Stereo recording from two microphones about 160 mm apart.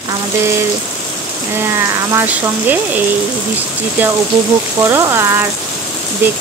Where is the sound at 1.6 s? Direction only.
15° right (ahead or behind).